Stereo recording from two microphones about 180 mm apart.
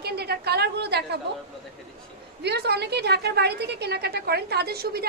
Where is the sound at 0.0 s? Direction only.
65° right (ahead or behind).